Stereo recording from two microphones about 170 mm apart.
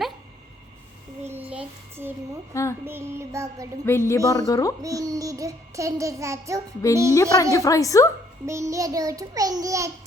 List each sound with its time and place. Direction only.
1.3 s child singing: 10° right (ahead or behind)
2.5 s speech: 15° left (ahead or behind)
2.8 s a sound: 15° right (ahead or behind)
3.8 s speech: 15° left (ahead or behind)
4.8 s child singing: 20° right (ahead or behind)
7.1 s a woman's voice: 20° left (ahead or behind)
8.4 s child singing: 15° right (ahead or behind)